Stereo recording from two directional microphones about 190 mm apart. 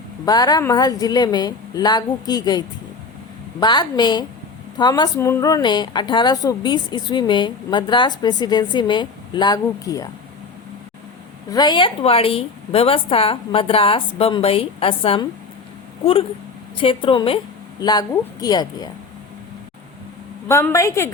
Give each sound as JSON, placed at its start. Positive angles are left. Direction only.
{"t": 0.3, "sound": "speech", "side_deg": 20}
{"t": 11.5, "sound": "speech", "side_deg": 25}
{"t": 16.7, "sound": "speech", "side_deg": 25}
{"t": 20.5, "sound": "a woman's voice", "side_deg": 15}